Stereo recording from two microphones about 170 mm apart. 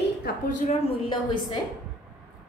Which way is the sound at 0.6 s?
35° left (ahead or behind).